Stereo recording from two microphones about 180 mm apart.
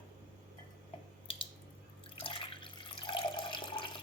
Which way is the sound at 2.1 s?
30° left (ahead or behind).